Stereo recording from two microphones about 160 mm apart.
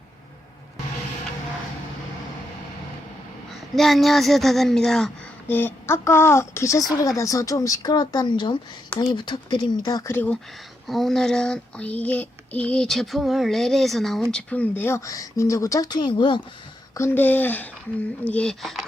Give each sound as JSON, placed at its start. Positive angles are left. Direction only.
{"t": 3.8, "sound": "speech", "side_deg": 0}
{"t": 10.8, "sound": "child singing", "side_deg": 0}
{"t": 16.9, "sound": "child singing", "side_deg": 15}
{"t": 18.3, "sound": "speech", "side_deg": 5}